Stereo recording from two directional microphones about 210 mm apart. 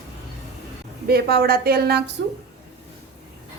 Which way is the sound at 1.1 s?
50° right (ahead or behind).